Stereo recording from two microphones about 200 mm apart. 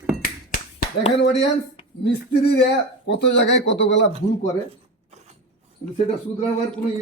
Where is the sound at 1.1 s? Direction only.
60° left (ahead or behind).